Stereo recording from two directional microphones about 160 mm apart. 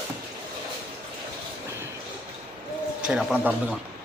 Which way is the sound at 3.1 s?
5° right (ahead or behind).